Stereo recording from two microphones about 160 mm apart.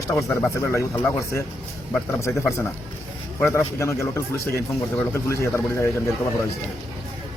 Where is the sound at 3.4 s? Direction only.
15° left (ahead or behind).